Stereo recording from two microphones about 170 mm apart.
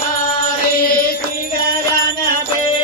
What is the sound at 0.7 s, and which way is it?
Music, 60° left (ahead or behind).